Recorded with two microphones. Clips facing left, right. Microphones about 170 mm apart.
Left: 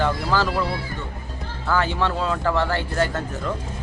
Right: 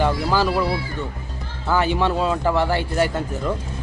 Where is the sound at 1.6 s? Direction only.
15° right (ahead or behind).